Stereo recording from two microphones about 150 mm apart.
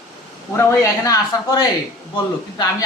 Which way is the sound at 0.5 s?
20° left (ahead or behind).